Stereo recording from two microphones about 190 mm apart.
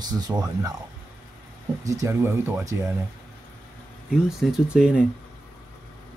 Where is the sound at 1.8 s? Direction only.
15° right (ahead or behind).